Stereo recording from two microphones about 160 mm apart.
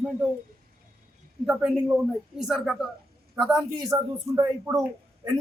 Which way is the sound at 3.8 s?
25° right (ahead or behind).